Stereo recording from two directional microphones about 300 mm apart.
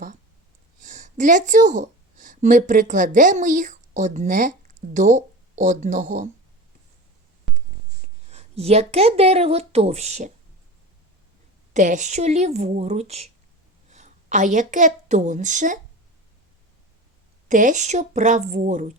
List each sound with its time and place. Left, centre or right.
0.8 s speech: right
8.0 s a woman's voice: right
11.7 s a woman's voice: right
17.5 s speech: right